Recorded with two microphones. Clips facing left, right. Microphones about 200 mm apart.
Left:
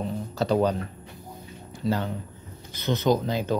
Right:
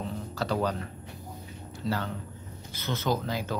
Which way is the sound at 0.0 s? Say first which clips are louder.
Left 5 dB; 20° left (ahead or behind).